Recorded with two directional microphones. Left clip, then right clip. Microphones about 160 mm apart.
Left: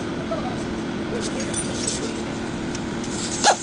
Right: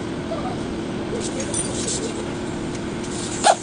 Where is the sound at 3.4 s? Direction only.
35° left (ahead or behind).